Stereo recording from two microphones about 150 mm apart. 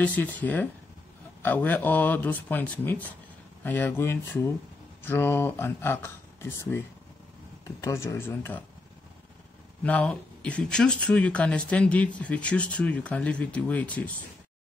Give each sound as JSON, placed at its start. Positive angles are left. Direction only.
{"t": 0.0, "sound": "speech", "side_deg": 10}
{"t": 7.8, "sound": "speech", "side_deg": 20}
{"t": 9.8, "sound": "speech", "side_deg": 10}